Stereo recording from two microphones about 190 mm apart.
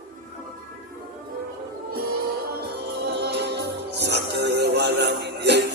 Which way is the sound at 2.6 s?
55° right (ahead or behind).